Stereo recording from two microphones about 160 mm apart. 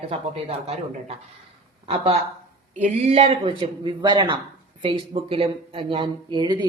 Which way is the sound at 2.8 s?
45° right (ahead or behind).